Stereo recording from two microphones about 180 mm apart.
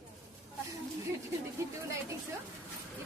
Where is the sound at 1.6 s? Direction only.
15° right (ahead or behind).